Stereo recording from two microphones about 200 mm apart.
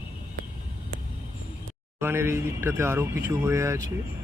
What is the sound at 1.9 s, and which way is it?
Speech, 10° right (ahead or behind).